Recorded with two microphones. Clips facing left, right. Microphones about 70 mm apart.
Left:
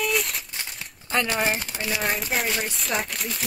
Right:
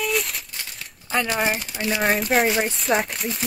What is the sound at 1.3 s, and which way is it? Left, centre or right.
Speech, centre.